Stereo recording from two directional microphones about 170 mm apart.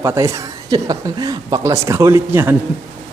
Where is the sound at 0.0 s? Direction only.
15° right (ahead or behind).